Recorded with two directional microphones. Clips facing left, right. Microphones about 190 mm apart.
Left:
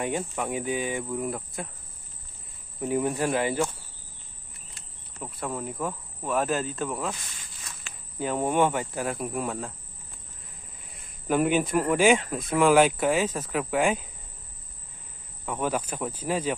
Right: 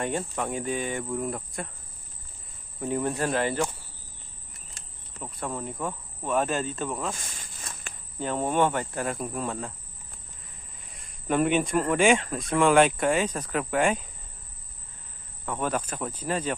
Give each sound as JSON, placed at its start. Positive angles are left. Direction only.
{"t": 0.0, "sound": "speech", "side_deg": 10}
{"t": 2.8, "sound": "speech", "side_deg": 10}
{"t": 5.2, "sound": "speech", "side_deg": 5}
{"t": 7.2, "sound": "snake", "side_deg": -45}
{"t": 8.2, "sound": "speech", "side_deg": 10}
{"t": 10.9, "sound": "speech", "side_deg": 5}
{"t": 15.4, "sound": "speech", "side_deg": 10}